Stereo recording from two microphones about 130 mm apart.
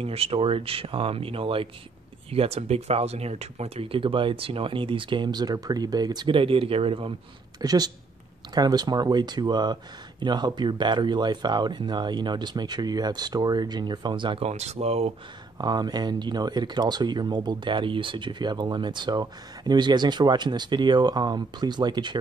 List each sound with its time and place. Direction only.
0.0 s speech: 50° right (ahead or behind)
7.6 s speech: 30° right (ahead or behind)
14.5 s speech: 60° right (ahead or behind)
15.5 s speech: 30° right (ahead or behind)